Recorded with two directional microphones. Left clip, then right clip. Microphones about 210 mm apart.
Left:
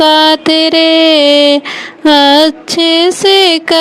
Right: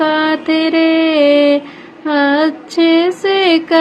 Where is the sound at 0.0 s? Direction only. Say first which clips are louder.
Left 7 dB; 50° left (ahead or behind).